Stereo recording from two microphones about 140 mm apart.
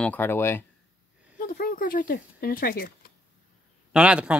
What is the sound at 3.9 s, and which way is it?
Speech, 5° right (ahead or behind).